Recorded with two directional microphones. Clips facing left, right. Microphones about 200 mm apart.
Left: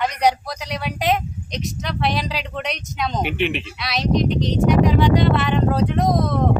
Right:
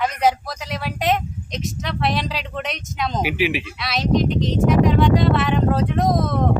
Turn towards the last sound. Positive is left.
turn(degrees=0)  # may be behind; listen again after turning